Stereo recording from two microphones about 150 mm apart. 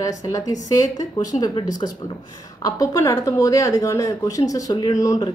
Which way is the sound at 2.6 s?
20° left (ahead or behind).